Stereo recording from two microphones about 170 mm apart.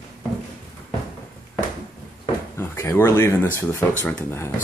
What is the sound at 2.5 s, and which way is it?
Speech, 15° left (ahead or behind).